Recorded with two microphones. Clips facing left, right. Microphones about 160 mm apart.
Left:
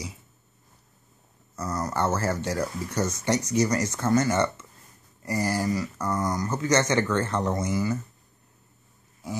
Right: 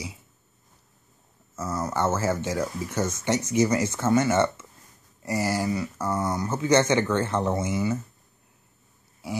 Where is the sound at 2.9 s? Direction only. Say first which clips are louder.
Even; 25° right (ahead or behind).